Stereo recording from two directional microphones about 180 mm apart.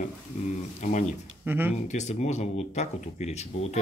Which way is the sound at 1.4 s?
10° right (ahead or behind).